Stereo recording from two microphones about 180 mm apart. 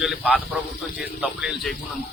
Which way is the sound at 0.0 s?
5° right (ahead or behind).